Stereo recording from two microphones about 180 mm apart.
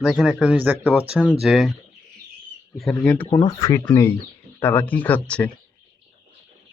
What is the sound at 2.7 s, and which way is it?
Speech, 5° left (ahead or behind).